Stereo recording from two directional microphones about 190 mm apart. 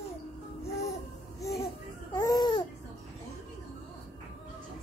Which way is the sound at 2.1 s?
20° left (ahead or behind).